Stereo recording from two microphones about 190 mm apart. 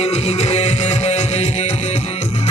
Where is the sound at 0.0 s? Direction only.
35° left (ahead or behind).